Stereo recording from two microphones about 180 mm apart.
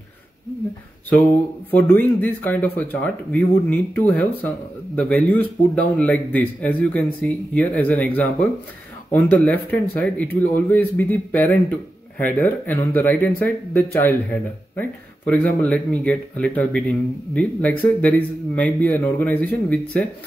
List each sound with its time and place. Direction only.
1.7 s speech: 10° left (ahead or behind)